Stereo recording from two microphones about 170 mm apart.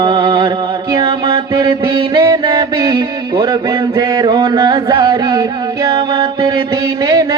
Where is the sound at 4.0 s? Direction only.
25° right (ahead or behind).